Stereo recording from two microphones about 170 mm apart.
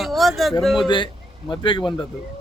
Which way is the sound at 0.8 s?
30° left (ahead or behind).